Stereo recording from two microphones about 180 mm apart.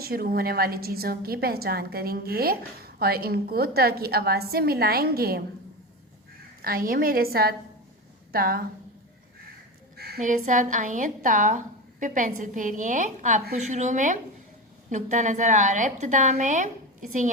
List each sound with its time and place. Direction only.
0.0 s a woman's voice: 55° right (ahead or behind)
6.6 s a woman's voice: 55° right (ahead or behind)
10.2 s speech: 45° right (ahead or behind)